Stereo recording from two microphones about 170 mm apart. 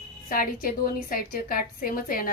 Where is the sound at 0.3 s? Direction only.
55° left (ahead or behind).